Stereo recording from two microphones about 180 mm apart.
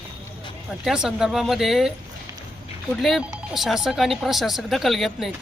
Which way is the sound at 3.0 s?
Centre (ahead or behind).